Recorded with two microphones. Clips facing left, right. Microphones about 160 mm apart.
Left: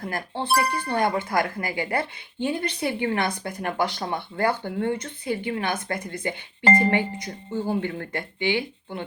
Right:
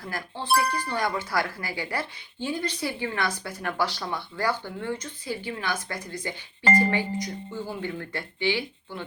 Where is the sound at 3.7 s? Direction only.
20° left (ahead or behind).